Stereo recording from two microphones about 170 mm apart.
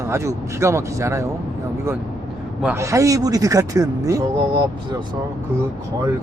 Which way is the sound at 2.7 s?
20° right (ahead or behind).